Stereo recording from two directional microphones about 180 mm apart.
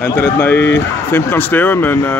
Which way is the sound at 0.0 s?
10° left (ahead or behind).